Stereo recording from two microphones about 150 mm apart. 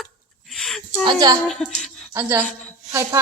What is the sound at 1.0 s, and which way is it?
Speech, 30° right (ahead or behind).